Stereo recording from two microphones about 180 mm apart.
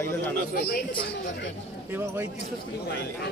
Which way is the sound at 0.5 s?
60° left (ahead or behind).